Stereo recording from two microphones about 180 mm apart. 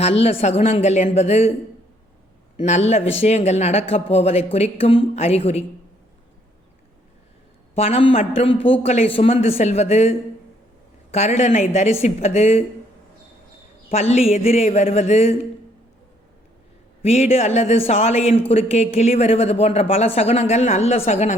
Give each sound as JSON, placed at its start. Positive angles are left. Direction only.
{"t": 0.0, "sound": "speech", "side_deg": 35}
{"t": 2.6, "sound": "speech", "side_deg": 40}
{"t": 7.8, "sound": "speech", "side_deg": 35}
{"t": 13.9, "sound": "speech", "side_deg": 35}
{"t": 17.0, "sound": "speech", "side_deg": 35}